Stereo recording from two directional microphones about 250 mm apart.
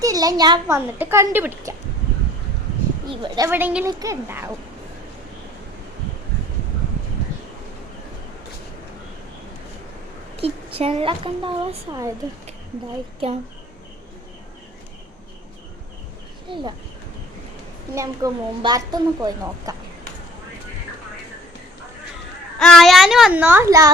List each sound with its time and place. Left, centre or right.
0.0 s a woman's voice: centre
3.3 s a woman's voice: centre
10.3 s a woman's voice: right
13.2 s a woman's voice: right
16.5 s a woman's voice: centre
17.9 s a woman's voice: centre
22.5 s speech: centre